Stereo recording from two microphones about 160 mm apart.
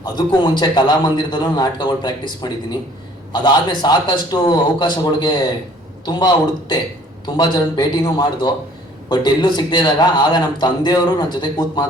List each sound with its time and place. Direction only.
0.0 s a man's voice: 25° left (ahead or behind)